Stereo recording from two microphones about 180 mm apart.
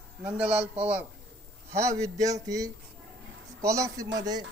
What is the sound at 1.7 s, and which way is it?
Speech, 15° right (ahead or behind).